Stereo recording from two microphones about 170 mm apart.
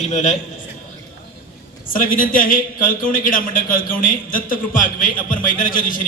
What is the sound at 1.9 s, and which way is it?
A man's voice, 55° left (ahead or behind).